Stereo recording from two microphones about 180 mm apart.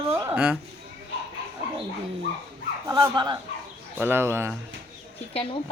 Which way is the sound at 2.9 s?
25° right (ahead or behind).